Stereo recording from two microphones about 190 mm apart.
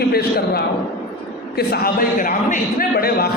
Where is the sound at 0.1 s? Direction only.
55° left (ahead or behind).